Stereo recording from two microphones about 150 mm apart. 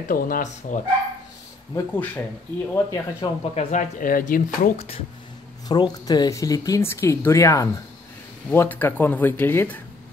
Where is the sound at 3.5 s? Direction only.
55° left (ahead or behind).